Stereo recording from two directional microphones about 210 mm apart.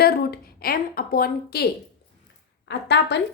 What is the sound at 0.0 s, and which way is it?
A woman's voice, 45° left (ahead or behind).